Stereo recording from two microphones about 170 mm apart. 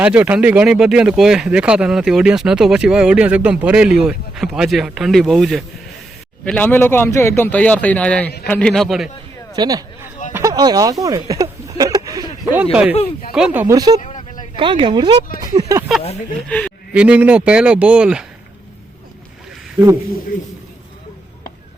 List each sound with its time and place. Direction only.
0.0 s speech: 10° right (ahead or behind)
9.6 s a sound: 20° right (ahead or behind)
11.0 s speech: 20° right (ahead or behind)
13.3 s a man's voice: 5° right (ahead or behind)
13.7 s speech: 20° right (ahead or behind)
14.0 s a sound: 45° left (ahead or behind)
14.5 s speech: 30° right (ahead or behind)
15.9 s speech: centre (ahead or behind)
16.9 s a man's voice: 5° right (ahead or behind)
20.3 s speech: 50° left (ahead or behind)